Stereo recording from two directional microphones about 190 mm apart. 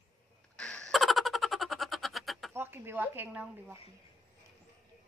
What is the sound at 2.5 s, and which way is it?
Speech, 15° right (ahead or behind).